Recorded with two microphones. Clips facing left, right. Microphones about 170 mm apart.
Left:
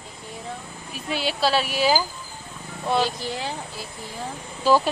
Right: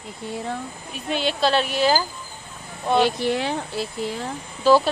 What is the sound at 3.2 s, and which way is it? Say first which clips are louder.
Speech: right 7 dB; 65° right (ahead or behind).